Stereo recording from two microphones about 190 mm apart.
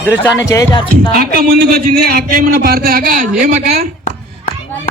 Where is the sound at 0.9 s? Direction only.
55° right (ahead or behind).